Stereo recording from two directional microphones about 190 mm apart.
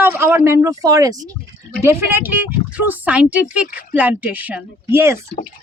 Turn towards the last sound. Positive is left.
turn(degrees=-10)  # may be behind; listen again after turning